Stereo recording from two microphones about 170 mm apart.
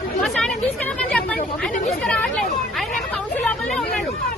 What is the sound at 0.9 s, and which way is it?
Speech, 5° left (ahead or behind).